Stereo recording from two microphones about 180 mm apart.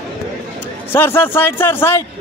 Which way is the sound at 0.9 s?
10° left (ahead or behind).